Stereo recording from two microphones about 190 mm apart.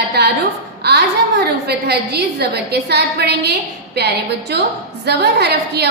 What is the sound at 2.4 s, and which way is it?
A woman's voice, 60° right (ahead or behind).